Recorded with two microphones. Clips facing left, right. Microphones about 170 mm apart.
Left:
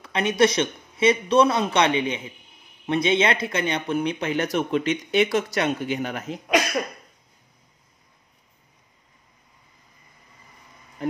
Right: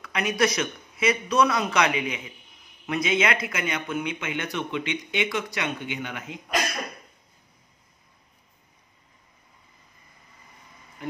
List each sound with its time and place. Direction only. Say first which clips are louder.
0.0 s a man's voice: left 4 dB; 25° left (ahead or behind)